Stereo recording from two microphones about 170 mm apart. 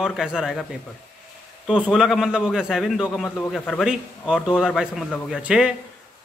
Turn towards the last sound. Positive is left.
turn(degrees=-5)  # may be behind; listen again after turning